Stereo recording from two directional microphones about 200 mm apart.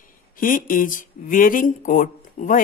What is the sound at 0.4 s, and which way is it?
Speech, 40° left (ahead or behind).